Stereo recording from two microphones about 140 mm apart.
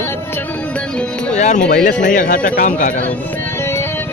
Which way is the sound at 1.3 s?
55° left (ahead or behind).